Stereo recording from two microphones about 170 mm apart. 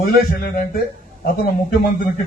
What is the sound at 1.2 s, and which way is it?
Speech, 55° left (ahead or behind).